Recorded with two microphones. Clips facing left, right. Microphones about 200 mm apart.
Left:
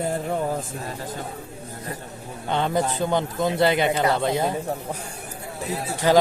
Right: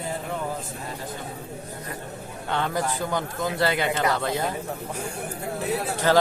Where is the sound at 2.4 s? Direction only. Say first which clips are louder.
Left 3 dB; 20° left (ahead or behind).